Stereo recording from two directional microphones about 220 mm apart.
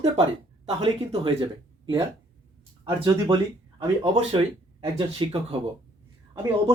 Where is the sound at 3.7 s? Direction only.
25° right (ahead or behind).